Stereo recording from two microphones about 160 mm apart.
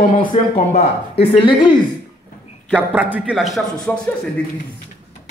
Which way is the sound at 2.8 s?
10° right (ahead or behind).